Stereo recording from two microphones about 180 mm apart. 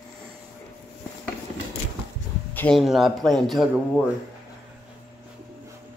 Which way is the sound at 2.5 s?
10° left (ahead or behind).